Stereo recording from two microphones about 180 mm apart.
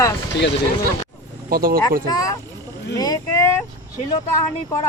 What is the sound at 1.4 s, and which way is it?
Speech, 55° right (ahead or behind).